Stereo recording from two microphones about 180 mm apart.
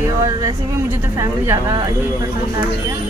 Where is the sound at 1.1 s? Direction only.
15° right (ahead or behind).